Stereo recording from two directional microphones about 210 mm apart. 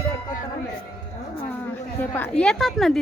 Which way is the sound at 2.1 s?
5° left (ahead or behind).